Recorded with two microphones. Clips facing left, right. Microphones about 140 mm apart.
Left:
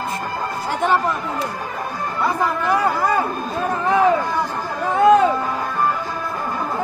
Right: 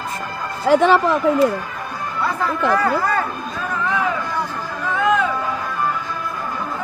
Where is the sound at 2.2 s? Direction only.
15° left (ahead or behind).